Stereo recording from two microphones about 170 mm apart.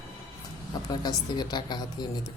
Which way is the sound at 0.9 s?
25° left (ahead or behind).